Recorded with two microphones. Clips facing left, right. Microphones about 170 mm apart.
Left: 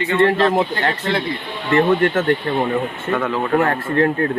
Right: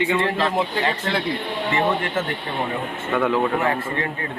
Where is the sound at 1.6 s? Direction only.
65° left (ahead or behind).